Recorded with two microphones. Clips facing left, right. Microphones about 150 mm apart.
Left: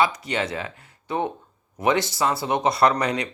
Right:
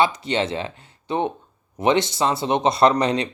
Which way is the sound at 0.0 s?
25° right (ahead or behind).